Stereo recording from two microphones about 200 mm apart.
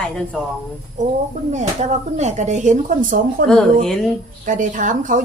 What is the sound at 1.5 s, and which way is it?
Speech, 35° right (ahead or behind).